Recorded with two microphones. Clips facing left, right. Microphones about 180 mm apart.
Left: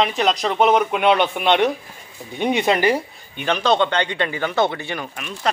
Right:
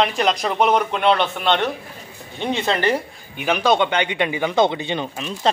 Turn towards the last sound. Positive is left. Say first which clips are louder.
# right 3 dB
turn(degrees=-25)  # may be behind; listen again after turning